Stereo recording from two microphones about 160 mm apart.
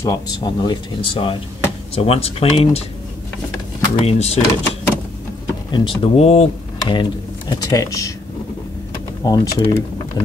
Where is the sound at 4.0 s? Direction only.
40° left (ahead or behind).